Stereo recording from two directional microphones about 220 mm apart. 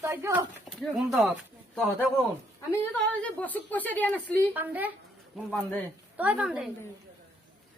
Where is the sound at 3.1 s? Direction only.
5° left (ahead or behind).